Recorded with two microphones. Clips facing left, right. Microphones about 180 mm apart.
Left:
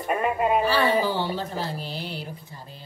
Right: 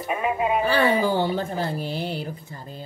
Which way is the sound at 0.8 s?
50° right (ahead or behind).